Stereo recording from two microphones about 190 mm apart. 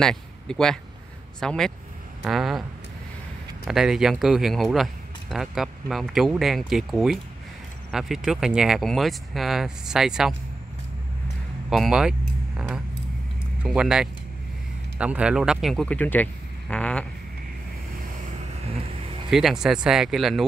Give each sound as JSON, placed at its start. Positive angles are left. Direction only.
{"t": 0.0, "sound": "speech", "side_deg": 5}
{"t": 3.6, "sound": "speech", "side_deg": 0}
{"t": 11.7, "sound": "speech", "side_deg": 0}
{"t": 18.5, "sound": "vehicle", "side_deg": -35}
{"t": 19.3, "sound": "speech", "side_deg": 0}